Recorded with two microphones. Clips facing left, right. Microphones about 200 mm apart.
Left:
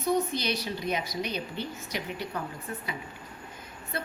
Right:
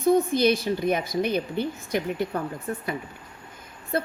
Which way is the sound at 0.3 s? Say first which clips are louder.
Right 10 dB; 50° right (ahead or behind).